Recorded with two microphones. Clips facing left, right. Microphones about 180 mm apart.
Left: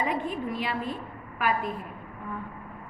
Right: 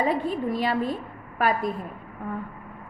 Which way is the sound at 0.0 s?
35° right (ahead or behind).